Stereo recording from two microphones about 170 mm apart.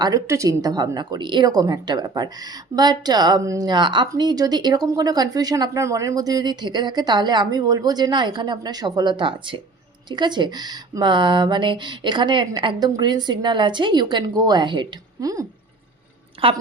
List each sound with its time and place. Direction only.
0.0 s speech: 20° right (ahead or behind)
16.4 s a woman's voice: 30° right (ahead or behind)